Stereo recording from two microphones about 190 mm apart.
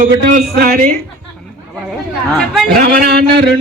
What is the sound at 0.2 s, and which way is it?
Speech, 55° right (ahead or behind).